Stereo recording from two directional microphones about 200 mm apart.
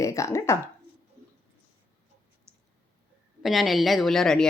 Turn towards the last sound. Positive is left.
turn(degrees=0)  # may be behind; listen again after turning